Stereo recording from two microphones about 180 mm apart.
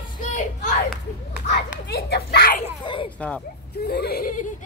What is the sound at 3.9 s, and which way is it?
Speech, 60° left (ahead or behind).